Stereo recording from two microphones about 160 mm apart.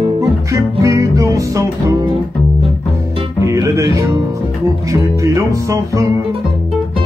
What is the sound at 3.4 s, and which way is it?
Music, 20° right (ahead or behind).